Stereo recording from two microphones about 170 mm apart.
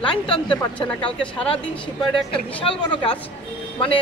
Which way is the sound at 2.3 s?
30° left (ahead or behind).